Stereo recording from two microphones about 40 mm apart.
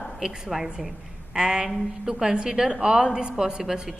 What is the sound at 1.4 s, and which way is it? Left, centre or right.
A woman's voice, right.